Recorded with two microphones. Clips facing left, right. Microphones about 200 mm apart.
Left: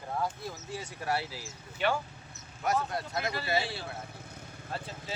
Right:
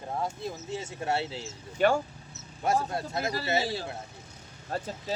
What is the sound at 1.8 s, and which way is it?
Speech, 45° right (ahead or behind).